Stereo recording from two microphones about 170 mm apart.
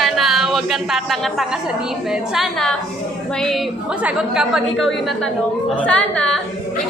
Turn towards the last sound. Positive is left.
turn(degrees=5)  # may be behind; listen again after turning